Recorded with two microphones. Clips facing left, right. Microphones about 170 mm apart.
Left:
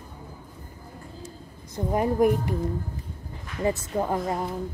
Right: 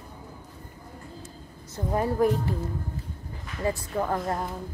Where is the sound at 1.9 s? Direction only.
15° left (ahead or behind).